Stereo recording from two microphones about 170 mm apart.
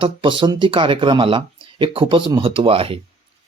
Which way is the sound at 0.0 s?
30° right (ahead or behind).